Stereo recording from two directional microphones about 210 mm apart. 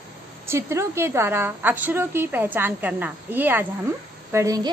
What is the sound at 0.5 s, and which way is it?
A woman's voice, 10° right (ahead or behind).